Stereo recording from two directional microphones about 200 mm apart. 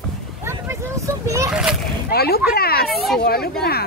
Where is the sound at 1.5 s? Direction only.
5° right (ahead or behind).